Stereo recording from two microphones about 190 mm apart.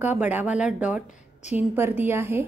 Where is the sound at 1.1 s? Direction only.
40° left (ahead or behind).